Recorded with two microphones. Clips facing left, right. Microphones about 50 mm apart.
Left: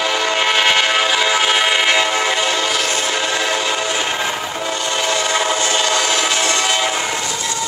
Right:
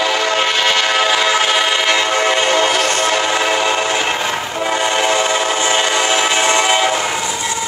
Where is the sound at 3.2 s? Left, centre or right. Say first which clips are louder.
Right 3 dB; right.